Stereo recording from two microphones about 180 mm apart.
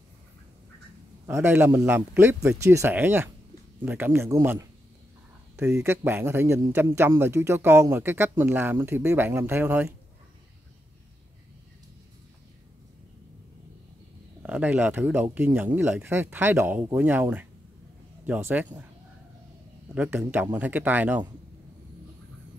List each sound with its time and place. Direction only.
1.2 s a man's voice: 10° right (ahead or behind)
14.4 s a man's voice: 10° right (ahead or behind)
19.9 s a man's voice: 10° right (ahead or behind)